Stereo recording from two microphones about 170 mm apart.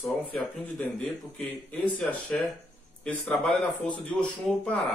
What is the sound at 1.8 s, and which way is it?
Speech, 5° left (ahead or behind).